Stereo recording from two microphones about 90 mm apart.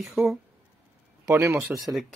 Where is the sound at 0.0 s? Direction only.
Centre (ahead or behind).